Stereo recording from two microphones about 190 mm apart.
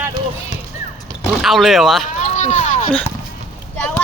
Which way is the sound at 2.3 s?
35° left (ahead or behind).